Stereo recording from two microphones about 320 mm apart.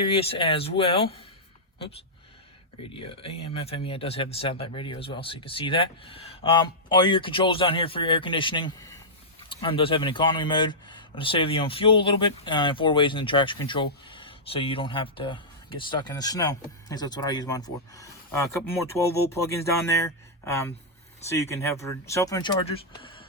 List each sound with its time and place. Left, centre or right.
0.0 s speech: centre
2.8 s speech: centre